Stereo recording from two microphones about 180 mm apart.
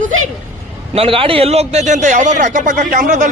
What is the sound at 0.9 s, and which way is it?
A man's voice, 30° right (ahead or behind).